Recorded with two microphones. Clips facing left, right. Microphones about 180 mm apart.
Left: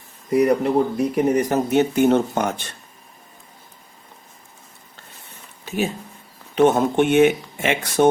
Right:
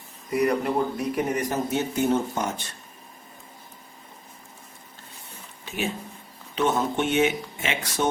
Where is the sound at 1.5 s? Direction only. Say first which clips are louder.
Left 8 dB; 70° left (ahead or behind).